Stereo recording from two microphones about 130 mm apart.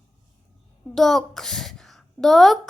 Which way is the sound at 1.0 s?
Centre (ahead or behind).